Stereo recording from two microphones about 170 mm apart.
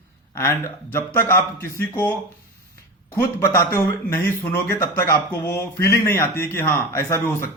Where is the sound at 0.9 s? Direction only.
15° left (ahead or behind).